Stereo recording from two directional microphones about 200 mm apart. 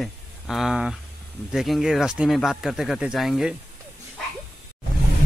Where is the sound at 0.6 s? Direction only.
Centre (ahead or behind).